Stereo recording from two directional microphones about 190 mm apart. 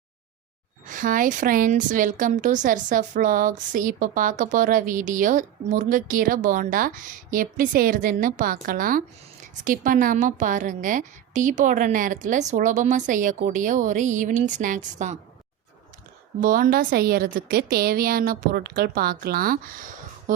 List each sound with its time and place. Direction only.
0.9 s a woman's voice: 45° right (ahead or behind)
16.4 s a woman's voice: 45° right (ahead or behind)